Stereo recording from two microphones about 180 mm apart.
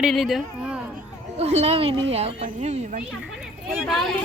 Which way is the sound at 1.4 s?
35° right (ahead or behind).